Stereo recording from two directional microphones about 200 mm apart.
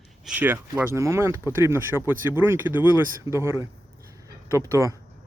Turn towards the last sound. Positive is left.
turn(degrees=-15)  # may be behind; listen again after turning